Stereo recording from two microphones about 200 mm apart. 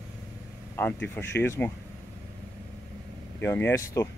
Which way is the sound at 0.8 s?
10° left (ahead or behind).